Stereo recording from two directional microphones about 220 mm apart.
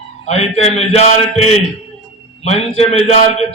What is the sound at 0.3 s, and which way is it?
A man's voice, 30° left (ahead or behind).